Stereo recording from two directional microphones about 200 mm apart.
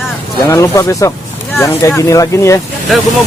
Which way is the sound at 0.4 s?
15° left (ahead or behind).